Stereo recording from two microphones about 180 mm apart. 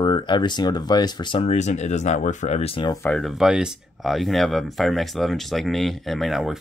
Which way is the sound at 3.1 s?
Centre (ahead or behind).